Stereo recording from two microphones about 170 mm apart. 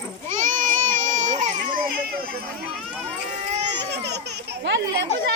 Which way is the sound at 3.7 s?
85° right.